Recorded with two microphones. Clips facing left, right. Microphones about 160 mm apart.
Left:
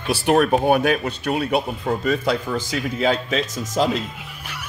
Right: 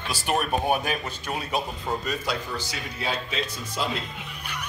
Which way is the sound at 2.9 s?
90° left.